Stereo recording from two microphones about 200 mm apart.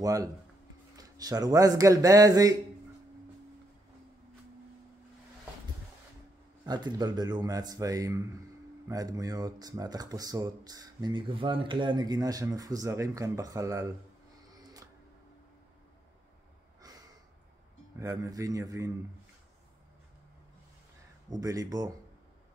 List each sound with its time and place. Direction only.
0.0 s speech: 15° right (ahead or behind)
6.6 s speech: 20° right (ahead or behind)
17.9 s speech: 15° right (ahead or behind)
21.3 s speech: 15° right (ahead or behind)